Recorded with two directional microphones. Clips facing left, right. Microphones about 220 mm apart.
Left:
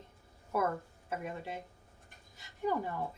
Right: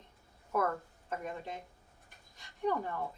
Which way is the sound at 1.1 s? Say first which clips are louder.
Left 1 dB; 10° left (ahead or behind).